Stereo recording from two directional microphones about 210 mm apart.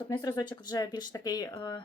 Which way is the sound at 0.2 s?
20° left (ahead or behind).